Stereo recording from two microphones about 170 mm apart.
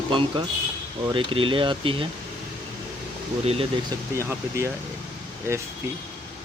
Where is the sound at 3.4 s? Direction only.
35° right (ahead or behind).